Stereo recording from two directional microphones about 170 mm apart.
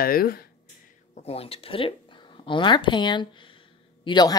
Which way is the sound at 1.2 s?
35° left (ahead or behind).